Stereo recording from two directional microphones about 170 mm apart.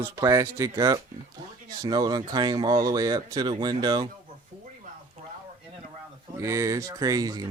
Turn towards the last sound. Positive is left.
turn(degrees=-20)  # may be behind; listen again after turning